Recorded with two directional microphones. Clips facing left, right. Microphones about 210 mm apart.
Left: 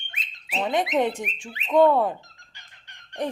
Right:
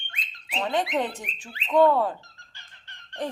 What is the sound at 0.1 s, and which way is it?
Speech, 20° left (ahead or behind).